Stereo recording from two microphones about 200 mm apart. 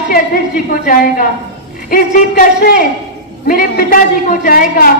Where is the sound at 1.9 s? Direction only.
45° left (ahead or behind).